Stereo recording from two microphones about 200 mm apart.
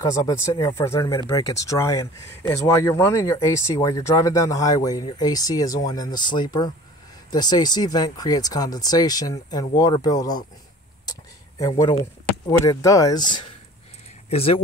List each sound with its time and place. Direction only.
0.0 s speech: 15° left (ahead or behind)
11.1 s a sound: 15° left (ahead or behind)
12.0 s speech: 15° left (ahead or behind)